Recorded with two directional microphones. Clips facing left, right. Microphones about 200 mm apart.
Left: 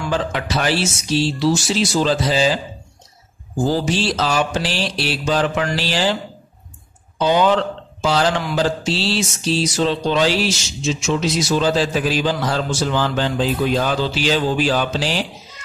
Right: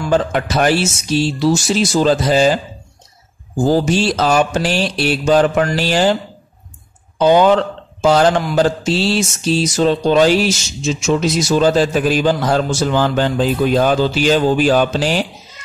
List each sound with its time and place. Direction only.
0.1 s mantra: 50° right (ahead or behind)
3.6 s mantra: 45° right (ahead or behind)
7.2 s mantra: 50° right (ahead or behind)